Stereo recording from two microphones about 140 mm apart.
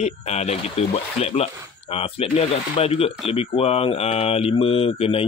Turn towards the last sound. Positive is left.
turn(degrees=45)  # may be behind; listen again after turning